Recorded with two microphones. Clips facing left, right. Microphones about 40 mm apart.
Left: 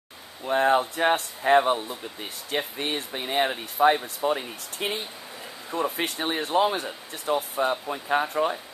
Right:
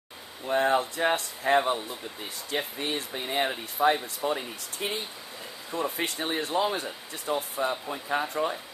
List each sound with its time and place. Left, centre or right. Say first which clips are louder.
0.5 s speech: left 3 dB; left
4.8 s speech: left 3 dB; left
5.7 s speech: left 3 dB; centre
5.9 s speech: left 2 dB; left